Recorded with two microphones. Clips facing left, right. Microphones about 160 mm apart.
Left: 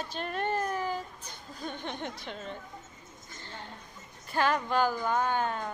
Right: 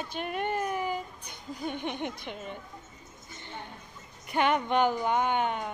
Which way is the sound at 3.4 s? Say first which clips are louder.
Right 3 dB; 20° right (ahead or behind).